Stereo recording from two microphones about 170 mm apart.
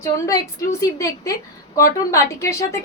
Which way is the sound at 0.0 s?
20° left (ahead or behind).